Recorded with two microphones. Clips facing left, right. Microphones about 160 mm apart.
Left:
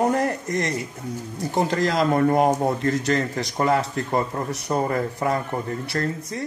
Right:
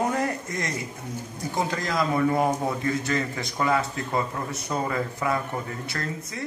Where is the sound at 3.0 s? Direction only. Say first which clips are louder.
Left 4 dB; 60° left (ahead or behind).